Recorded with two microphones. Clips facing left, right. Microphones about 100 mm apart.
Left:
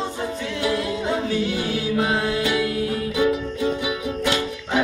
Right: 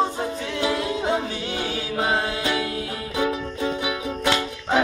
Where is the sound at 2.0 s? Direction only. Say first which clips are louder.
Even; 30° right (ahead or behind).